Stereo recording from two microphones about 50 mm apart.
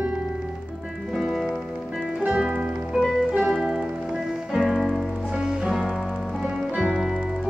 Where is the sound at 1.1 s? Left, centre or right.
Centre.